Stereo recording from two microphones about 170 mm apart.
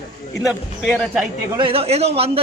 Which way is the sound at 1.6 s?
35° right (ahead or behind).